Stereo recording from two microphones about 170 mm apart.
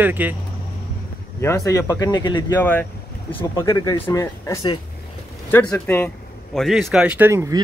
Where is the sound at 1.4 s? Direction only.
20° left (ahead or behind).